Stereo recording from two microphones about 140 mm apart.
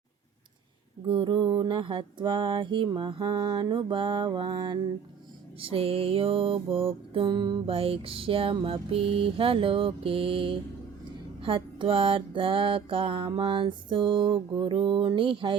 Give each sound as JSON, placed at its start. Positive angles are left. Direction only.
{"t": 1.0, "sound": "music", "side_deg": -35}